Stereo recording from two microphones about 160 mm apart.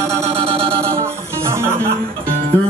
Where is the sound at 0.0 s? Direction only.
20° right (ahead or behind).